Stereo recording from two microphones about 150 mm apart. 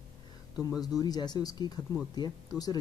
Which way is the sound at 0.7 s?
25° left (ahead or behind).